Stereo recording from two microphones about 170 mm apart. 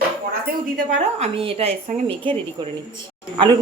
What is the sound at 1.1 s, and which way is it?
A man's voice, 35° right (ahead or behind).